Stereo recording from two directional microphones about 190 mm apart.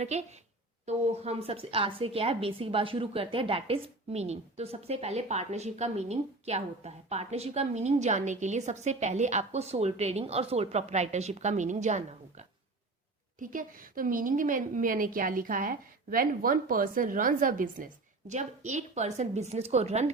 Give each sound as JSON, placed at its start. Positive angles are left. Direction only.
{"t": 0.0, "sound": "a woman's voice", "side_deg": -35}